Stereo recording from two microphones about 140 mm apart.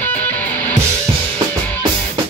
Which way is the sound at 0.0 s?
10° left (ahead or behind).